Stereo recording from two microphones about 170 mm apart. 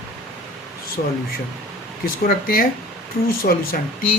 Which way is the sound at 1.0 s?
55° left (ahead or behind).